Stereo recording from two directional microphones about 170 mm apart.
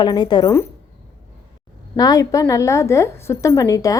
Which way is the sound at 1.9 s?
20° left (ahead or behind).